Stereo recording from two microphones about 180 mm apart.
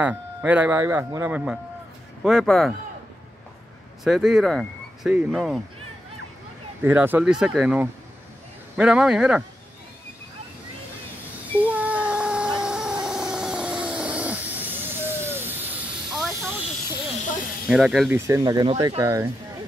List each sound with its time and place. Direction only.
0.0 s speech: 10° right (ahead or behind)
4.0 s speech: centre (ahead or behind)
6.8 s speech: 10° right (ahead or behind)
11.5 s a sound: 10° right (ahead or behind)
17.6 s speech: 5° right (ahead or behind)
18.1 s speech: 15° right (ahead or behind)